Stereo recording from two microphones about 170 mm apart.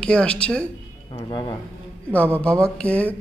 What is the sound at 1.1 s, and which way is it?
Speech, 25° left (ahead or behind).